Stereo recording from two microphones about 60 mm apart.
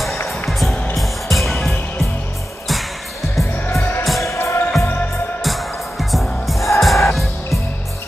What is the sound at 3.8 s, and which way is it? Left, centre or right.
Music, left.